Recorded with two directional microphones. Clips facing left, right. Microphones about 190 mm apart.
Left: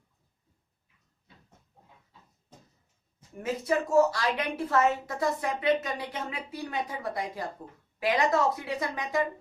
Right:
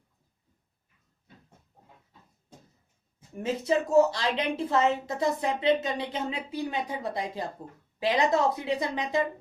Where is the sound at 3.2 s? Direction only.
25° right (ahead or behind).